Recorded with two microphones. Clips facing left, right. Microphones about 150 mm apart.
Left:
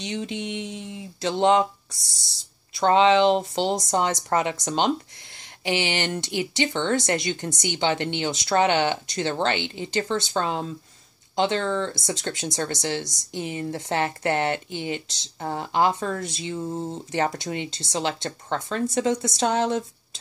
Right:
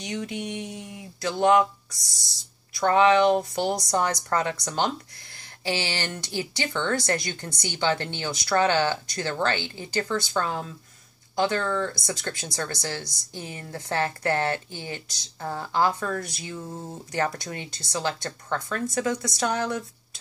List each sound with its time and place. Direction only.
0.0 s speech: 25° left (ahead or behind)